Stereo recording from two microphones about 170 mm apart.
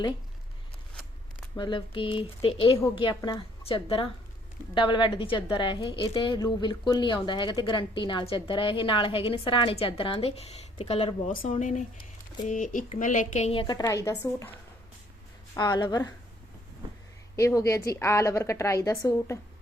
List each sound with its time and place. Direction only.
1.5 s a woman's voice: 30° left (ahead or behind)
11.6 s speech: 50° left (ahead or behind); by 14.5 s 15° left (ahead or behind)
15.5 s a woman's voice: 25° left (ahead or behind)
17.3 s a woman's voice: 15° left (ahead or behind)